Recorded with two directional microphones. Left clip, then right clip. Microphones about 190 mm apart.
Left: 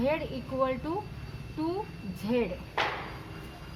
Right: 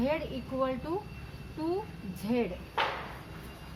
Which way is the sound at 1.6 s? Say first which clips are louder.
Left 1 dB; 10° right (ahead or behind).